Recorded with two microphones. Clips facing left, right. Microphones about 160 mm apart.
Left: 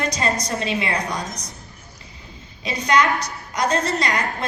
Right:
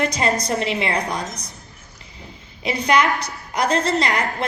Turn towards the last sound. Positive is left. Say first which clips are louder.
# right 2 dB
turn(degrees=-30)  # may be behind; listen again after turning